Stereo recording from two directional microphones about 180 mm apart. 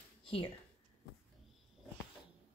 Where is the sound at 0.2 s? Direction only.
30° left (ahead or behind).